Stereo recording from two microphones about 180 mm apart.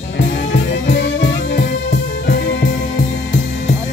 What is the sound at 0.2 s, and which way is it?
Music, 90° left.